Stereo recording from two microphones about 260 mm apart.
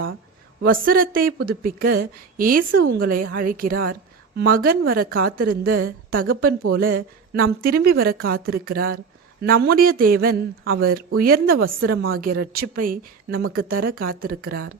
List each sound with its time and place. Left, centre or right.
0.6 s speech: right